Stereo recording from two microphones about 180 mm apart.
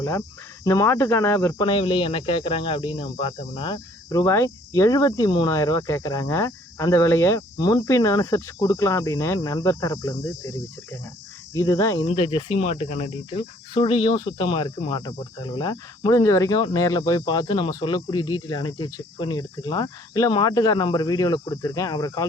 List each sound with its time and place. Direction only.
0.0 s speech: 15° left (ahead or behind)
1.6 s speech: 30° left (ahead or behind)
11.5 s speech: 20° left (ahead or behind)
12.0 s speech: 30° left (ahead or behind)